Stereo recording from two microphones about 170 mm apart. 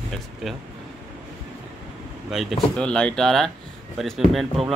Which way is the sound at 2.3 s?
Centre (ahead or behind).